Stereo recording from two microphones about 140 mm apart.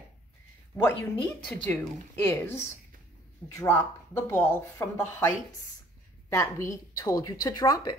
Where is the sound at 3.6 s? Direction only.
20° left (ahead or behind).